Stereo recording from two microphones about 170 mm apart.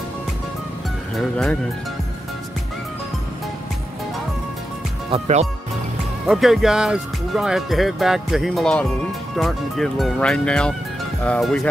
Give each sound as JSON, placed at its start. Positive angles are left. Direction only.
{"t": 1.1, "sound": "speech", "side_deg": 5}
{"t": 5.1, "sound": "speech", "side_deg": -40}
{"t": 6.2, "sound": "speech", "side_deg": 0}